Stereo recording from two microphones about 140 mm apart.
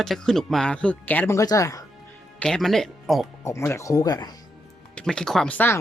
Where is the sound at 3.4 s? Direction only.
20° left (ahead or behind).